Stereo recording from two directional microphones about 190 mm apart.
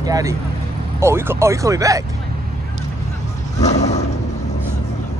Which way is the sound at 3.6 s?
35° left (ahead or behind).